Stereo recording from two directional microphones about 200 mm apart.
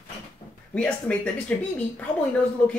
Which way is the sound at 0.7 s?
5° left (ahead or behind).